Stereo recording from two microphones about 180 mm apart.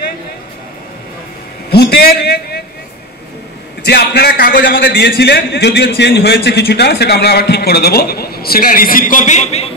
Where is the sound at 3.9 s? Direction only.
65° left (ahead or behind).